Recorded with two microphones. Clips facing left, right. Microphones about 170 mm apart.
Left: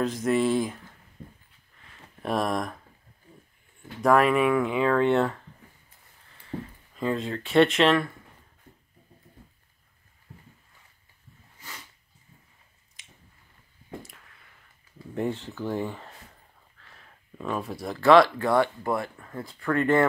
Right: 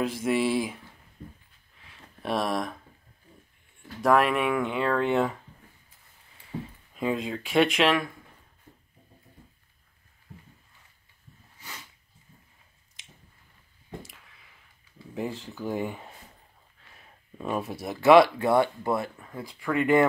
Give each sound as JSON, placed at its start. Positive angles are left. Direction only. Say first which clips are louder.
{"t": 0.0, "sound": "speech", "louder": "left 2 dB", "side_deg": -10}
{"t": 1.8, "sound": "a sound", "louder": "left 2 dB", "side_deg": 0}
{"t": 4.0, "sound": "speech", "louder": "left 2 dB", "side_deg": 0}
{"t": 6.9, "sound": "speech", "louder": "even", "side_deg": -10}
{"t": 14.1, "sound": "a sound", "louder": "left 1 dB", "side_deg": -5}
{"t": 15.1, "sound": "speech", "louder": "left 4 dB", "side_deg": -5}
{"t": 17.0, "sound": "a sound", "louder": "even", "side_deg": -15}
{"t": 17.8, "sound": "speech", "louder": "right 1 dB", "side_deg": -20}
{"t": 19.1, "sound": "speech", "louder": "left 1 dB", "side_deg": -10}